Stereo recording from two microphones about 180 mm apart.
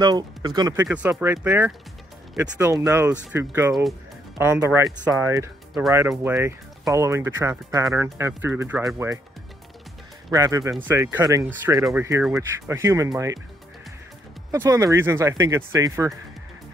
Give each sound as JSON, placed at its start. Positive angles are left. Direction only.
{"t": 0.0, "sound": "speech", "side_deg": -20}
{"t": 0.8, "sound": "speech", "side_deg": -5}
{"t": 10.3, "sound": "speech", "side_deg": -20}
{"t": 14.5, "sound": "speech", "side_deg": -20}